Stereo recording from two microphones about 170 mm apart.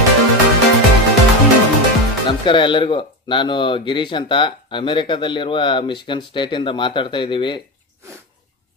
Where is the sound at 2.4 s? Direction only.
30° left (ahead or behind).